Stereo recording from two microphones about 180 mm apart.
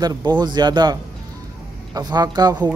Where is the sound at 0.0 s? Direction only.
20° right (ahead or behind).